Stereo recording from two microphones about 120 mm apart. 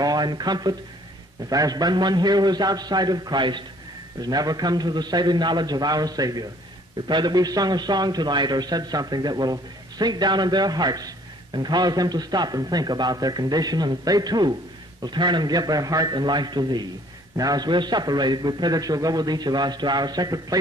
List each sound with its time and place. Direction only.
0.0 s a man's voice: 35° right (ahead or behind)